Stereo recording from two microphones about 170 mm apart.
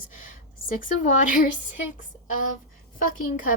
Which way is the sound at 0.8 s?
50° left (ahead or behind).